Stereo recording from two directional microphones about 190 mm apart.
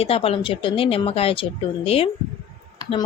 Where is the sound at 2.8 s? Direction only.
20° left (ahead or behind).